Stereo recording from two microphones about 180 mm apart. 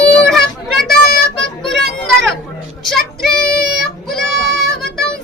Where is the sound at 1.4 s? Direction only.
70° right (ahead or behind).